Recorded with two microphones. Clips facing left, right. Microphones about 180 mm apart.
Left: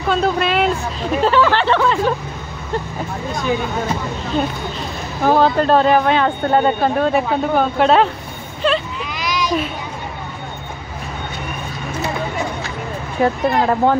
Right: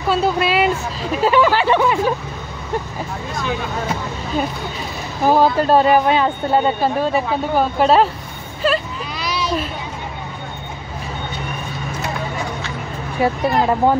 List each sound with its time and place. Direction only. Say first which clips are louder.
0.1 s speech: even; 5° right (ahead or behind)
4.3 s speech: left 1 dB; 5° right (ahead or behind)
8.6 s vehicle: left 1 dB; 5° right (ahead or behind)
9.0 s a sound: left 2 dB; 35° right (ahead or behind)
13.2 s speech: left 1 dB; 10° right (ahead or behind)